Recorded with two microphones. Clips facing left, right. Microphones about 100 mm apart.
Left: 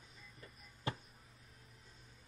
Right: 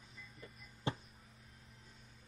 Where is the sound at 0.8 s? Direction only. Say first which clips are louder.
Right 2 dB; 25° right (ahead or behind).